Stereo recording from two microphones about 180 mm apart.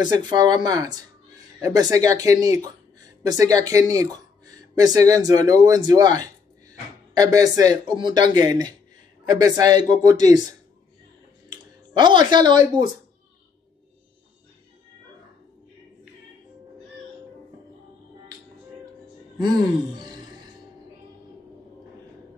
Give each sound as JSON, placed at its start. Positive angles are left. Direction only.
{"t": 0.0, "sound": "speech", "side_deg": -25}
{"t": 11.5, "sound": "a sound", "side_deg": -25}
{"t": 12.8, "sound": "speech", "side_deg": -25}